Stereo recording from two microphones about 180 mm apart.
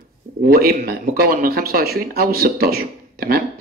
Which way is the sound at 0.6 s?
55° right (ahead or behind).